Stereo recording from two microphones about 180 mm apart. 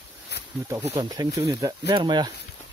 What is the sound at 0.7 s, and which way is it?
Speech, 20° right (ahead or behind).